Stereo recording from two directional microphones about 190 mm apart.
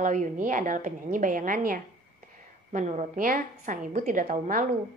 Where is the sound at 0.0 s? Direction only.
45° right (ahead or behind).